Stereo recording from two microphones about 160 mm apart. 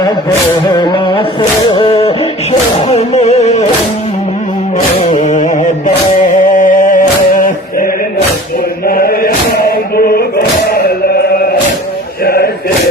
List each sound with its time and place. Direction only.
0.7 s music: 25° left (ahead or behind); by 3.6 s 45° left (ahead or behind)
5.1 s music: 50° left (ahead or behind)
8.9 s chant: 65° left (ahead or behind)
12.2 s a sound: 70° left (ahead or behind)